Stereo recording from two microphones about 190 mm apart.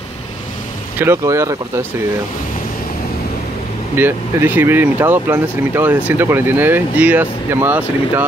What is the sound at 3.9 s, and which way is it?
Speech, 10° right (ahead or behind).